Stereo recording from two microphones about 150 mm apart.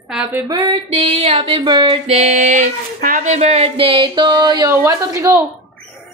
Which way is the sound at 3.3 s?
45° right (ahead or behind).